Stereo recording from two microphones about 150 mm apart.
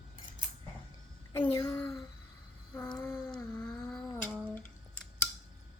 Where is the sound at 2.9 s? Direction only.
15° left (ahead or behind).